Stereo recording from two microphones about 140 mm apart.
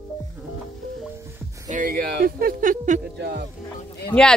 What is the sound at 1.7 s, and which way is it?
Speech, 80° right.